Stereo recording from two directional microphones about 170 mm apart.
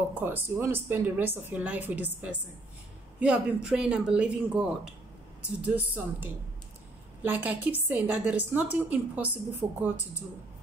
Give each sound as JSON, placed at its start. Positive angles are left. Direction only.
{"t": 0.1, "sound": "a woman's voice", "side_deg": -10}